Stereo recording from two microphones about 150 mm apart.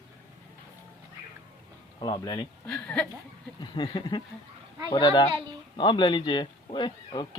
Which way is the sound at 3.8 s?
40° left (ahead or behind).